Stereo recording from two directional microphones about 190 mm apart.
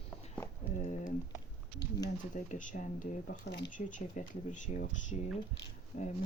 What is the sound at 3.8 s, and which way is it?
Speech, 45° left (ahead or behind).